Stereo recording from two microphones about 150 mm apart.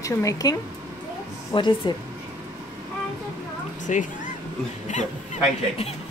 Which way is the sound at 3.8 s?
60° left (ahead or behind).